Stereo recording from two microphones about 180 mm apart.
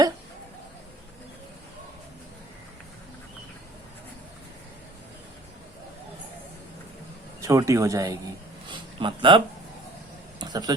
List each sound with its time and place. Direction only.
7.4 s speech: 15° right (ahead or behind)
8.7 s a sound: 25° right (ahead or behind)
10.4 s speech: 20° right (ahead or behind)